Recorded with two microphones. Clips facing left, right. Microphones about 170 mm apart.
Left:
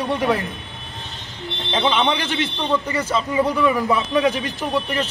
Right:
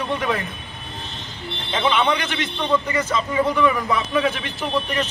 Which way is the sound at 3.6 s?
5° left (ahead or behind).